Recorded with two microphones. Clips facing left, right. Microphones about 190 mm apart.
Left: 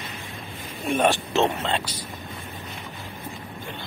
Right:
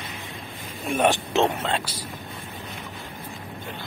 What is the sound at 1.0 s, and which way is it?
Speech, 15° right (ahead or behind).